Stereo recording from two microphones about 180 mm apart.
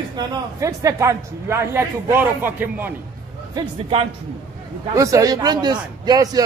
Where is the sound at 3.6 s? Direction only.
30° right (ahead or behind).